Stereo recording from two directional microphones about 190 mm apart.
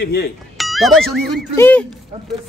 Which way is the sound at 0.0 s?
55° left (ahead or behind).